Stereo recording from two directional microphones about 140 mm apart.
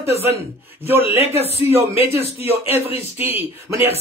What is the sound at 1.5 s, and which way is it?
Speech, 45° right (ahead or behind).